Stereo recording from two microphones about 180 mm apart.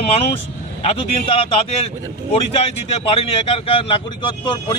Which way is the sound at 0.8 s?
35° left (ahead or behind).